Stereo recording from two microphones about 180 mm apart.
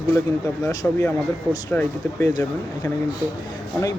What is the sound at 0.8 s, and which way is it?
Speech, 10° left (ahead or behind).